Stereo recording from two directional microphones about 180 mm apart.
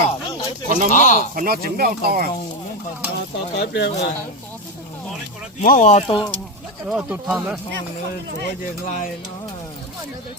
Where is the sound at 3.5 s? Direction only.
70° left (ahead or behind).